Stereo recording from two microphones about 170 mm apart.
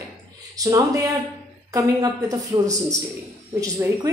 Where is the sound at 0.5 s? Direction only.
20° right (ahead or behind).